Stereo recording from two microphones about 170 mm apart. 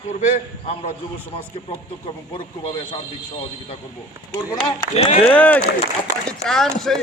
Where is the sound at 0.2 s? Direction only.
45° left (ahead or behind).